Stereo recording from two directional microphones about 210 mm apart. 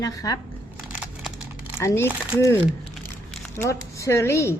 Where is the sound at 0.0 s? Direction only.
15° left (ahead or behind).